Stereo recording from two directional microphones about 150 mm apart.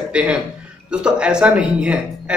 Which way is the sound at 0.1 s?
5° right (ahead or behind).